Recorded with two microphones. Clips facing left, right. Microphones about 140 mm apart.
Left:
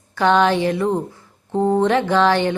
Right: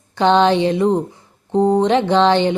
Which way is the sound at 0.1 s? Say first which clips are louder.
Right 2 dB; 25° right (ahead or behind).